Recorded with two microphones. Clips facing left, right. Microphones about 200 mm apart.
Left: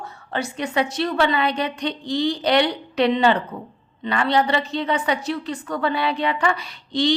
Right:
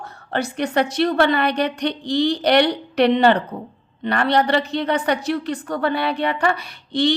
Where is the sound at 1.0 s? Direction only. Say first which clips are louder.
Right 3 dB; 50° right (ahead or behind).